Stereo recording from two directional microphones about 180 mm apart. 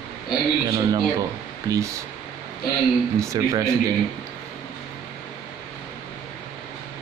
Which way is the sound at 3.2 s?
15° right (ahead or behind).